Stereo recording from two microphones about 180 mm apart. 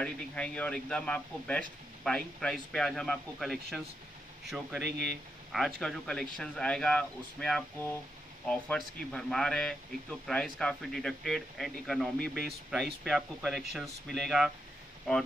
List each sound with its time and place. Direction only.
0.0 s speech: 5° left (ahead or behind)
4.8 s speech: 65° right (ahead or behind)
5.5 s speech: centre (ahead or behind)